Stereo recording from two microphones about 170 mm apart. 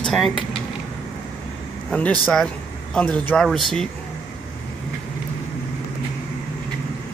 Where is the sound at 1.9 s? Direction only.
5° left (ahead or behind).